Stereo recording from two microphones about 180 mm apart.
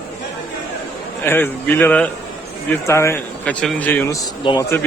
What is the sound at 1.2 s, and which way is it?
A man's voice, 10° left (ahead or behind).